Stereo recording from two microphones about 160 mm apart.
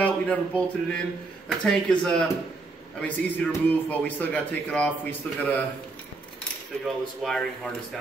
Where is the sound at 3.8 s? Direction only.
10° left (ahead or behind).